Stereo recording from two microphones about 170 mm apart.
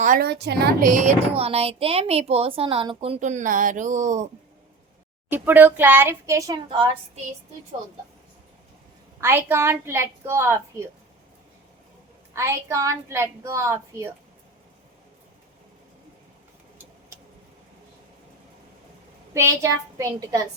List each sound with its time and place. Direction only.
0.0 s a woman's voice: 50° right (ahead or behind)
0.3 s a woman's voice: 75° right (ahead or behind)
0.9 s speech: 45° right (ahead or behind)
5.3 s a woman's voice: 10° right (ahead or behind); by 6.9 s 30° right (ahead or behind)
9.2 s a woman's voice: 15° right (ahead or behind)
12.3 s a woman's voice: 15° right (ahead or behind)
19.3 s a woman's voice: 15° right (ahead or behind)